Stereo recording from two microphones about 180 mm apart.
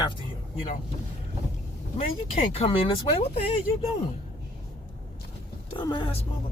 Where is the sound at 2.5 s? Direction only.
30° left (ahead or behind).